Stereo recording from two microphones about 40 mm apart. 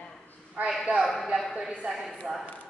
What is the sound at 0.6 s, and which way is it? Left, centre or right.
Speech, right.